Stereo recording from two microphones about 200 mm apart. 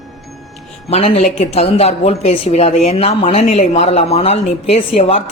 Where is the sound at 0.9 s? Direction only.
30° left (ahead or behind).